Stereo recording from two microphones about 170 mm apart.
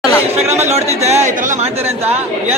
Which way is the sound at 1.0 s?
40° right (ahead or behind).